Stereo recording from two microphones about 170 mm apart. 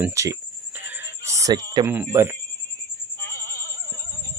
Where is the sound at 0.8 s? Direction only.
15° right (ahead or behind).